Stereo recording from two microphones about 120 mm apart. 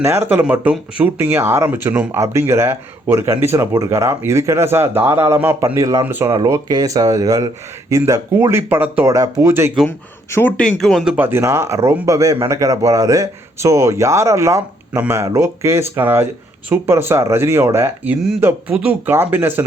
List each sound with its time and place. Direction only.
0.0 s speech: 20° right (ahead or behind)
5.7 s speech: 30° right (ahead or behind)
6.1 s speech: 20° right (ahead or behind)
6.3 s speech: 30° right (ahead or behind)
9.0 s speech: 30° right (ahead or behind)
10.6 s speech: 5° left (ahead or behind)
11.2 s speech: 20° right (ahead or behind)